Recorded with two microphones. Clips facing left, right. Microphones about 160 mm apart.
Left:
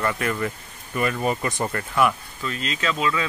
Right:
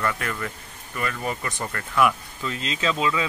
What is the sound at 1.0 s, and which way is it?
Speech, 20° left (ahead or behind).